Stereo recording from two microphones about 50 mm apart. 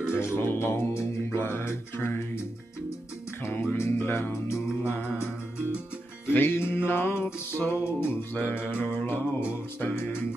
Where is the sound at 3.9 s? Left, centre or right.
Left.